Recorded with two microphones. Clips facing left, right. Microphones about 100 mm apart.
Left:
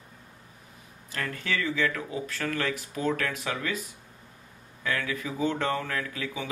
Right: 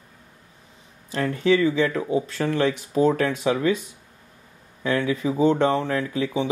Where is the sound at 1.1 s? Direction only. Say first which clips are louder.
Right 12 dB; 25° right (ahead or behind).